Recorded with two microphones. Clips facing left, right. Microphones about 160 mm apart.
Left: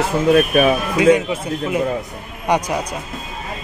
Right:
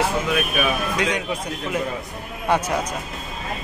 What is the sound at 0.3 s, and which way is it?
Speech, 40° left (ahead or behind).